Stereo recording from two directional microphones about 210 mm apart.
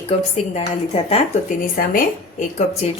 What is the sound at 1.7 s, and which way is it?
A woman's voice, 40° left (ahead or behind).